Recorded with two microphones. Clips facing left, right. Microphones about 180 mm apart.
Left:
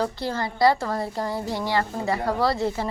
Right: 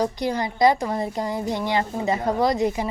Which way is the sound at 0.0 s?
15° right (ahead or behind).